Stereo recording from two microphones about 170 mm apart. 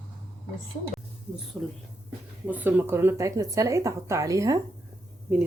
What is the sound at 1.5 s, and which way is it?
Speech, 5° right (ahead or behind).